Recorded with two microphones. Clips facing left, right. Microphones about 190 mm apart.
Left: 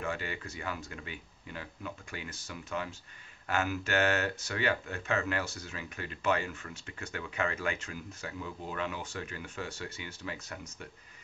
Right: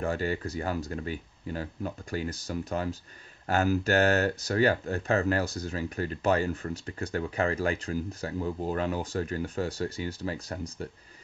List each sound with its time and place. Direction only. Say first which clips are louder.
0.0 s speech: right 7 dB; 40° right (ahead or behind)